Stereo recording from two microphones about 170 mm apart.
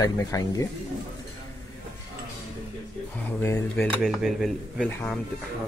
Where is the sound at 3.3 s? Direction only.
15° left (ahead or behind).